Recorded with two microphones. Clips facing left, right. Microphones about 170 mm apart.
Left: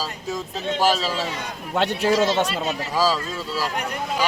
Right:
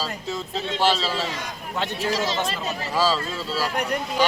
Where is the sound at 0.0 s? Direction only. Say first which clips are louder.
Left 1 dB; 15° left (ahead or behind).